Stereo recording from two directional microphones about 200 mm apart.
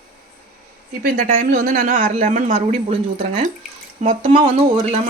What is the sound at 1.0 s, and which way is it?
Speech, 45° right (ahead or behind).